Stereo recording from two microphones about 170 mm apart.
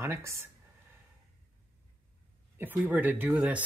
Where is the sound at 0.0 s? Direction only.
15° right (ahead or behind).